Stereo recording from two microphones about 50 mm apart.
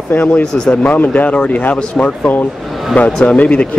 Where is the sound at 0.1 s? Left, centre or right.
Left.